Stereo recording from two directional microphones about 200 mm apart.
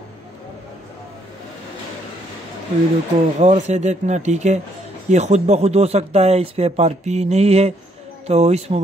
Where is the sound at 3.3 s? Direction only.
35° right (ahead or behind).